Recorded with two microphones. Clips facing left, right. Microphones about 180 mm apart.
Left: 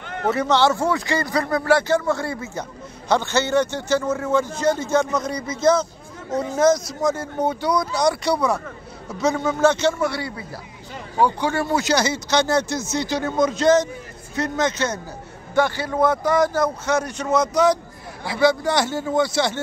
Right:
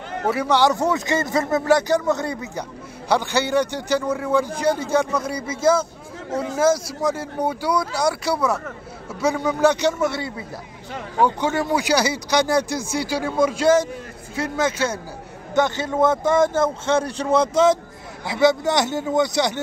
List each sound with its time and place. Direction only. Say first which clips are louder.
0.3 s speech: even; 10° right (ahead or behind)
15.5 s speech: even; 20° right (ahead or behind)